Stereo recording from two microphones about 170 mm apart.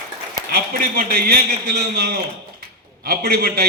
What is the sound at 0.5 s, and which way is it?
A man's voice, 60° right (ahead or behind).